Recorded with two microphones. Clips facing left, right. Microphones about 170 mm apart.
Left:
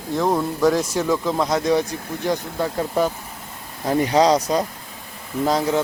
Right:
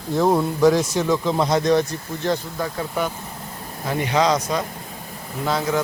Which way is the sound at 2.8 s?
35° left (ahead or behind).